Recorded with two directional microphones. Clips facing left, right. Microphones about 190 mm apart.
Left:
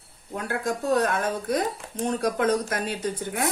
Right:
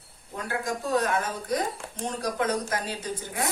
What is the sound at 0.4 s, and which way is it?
A woman's voice, 60° left (ahead or behind).